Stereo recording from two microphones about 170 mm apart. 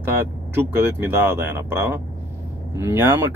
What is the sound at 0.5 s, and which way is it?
Speech, 15° right (ahead or behind).